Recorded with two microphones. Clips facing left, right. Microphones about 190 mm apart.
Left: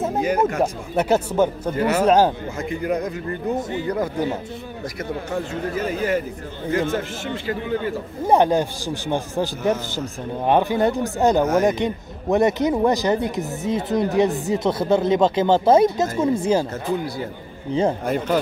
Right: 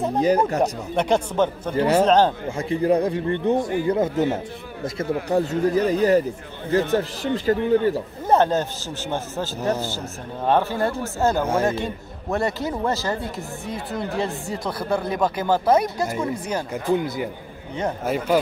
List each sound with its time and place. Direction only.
0.6 s a man's voice: 5° left (ahead or behind)
1.8 s speech: 30° right (ahead or behind)
2.0 s a man's voice: 10° left (ahead or behind)
2.5 s a man's voice: 30° right (ahead or behind)
8.3 s a man's voice: 15° left (ahead or behind)
16.7 s speech: 15° right (ahead or behind)